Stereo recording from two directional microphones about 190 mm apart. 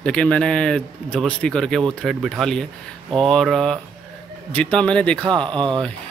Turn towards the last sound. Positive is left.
turn(degrees=-25)  # may be behind; listen again after turning